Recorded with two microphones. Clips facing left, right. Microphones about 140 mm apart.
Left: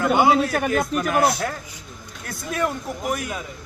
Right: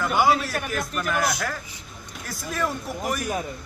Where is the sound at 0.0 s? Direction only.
25° left (ahead or behind).